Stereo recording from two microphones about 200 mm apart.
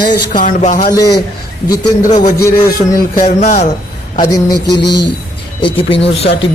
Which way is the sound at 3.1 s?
35° left (ahead or behind).